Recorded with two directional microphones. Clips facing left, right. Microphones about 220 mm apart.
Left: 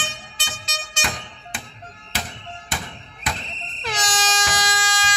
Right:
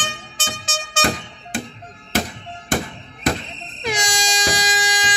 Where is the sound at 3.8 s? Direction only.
15° right (ahead or behind).